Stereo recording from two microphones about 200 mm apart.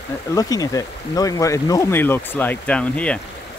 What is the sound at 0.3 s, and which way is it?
Speech, 20° left (ahead or behind).